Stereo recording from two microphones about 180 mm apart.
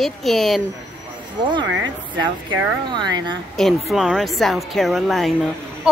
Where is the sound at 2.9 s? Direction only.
25° right (ahead or behind).